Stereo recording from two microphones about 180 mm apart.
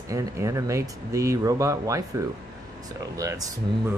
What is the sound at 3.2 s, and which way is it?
Speech, 15° right (ahead or behind).